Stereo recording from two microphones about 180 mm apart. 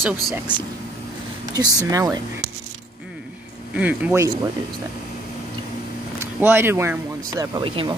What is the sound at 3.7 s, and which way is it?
Speech, 10° right (ahead or behind).